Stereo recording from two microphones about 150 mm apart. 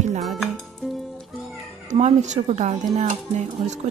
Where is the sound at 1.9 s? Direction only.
50° right (ahead or behind).